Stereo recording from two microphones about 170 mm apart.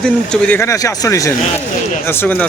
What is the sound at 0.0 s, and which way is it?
Speech, 10° left (ahead or behind).